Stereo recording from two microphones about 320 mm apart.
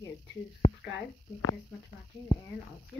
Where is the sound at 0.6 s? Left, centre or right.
Left.